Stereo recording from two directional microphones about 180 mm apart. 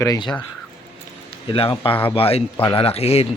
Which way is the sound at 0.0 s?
20° left (ahead or behind).